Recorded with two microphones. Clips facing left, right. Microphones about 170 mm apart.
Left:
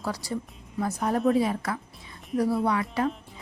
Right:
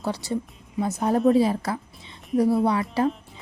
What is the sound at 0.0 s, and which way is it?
Speech, 25° right (ahead or behind).